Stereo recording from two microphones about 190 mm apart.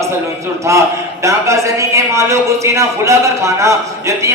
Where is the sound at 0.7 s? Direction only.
15° right (ahead or behind).